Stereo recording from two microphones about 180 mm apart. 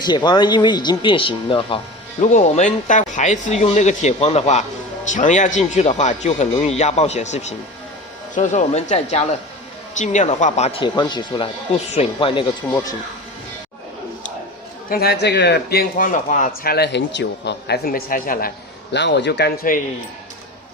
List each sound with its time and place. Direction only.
0.0 s speech: 25° left (ahead or behind)
2.2 s speech: 40° left (ahead or behind)
14.8 s a man's voice: 60° left (ahead or behind)
16.6 s a man's voice: 65° left (ahead or behind)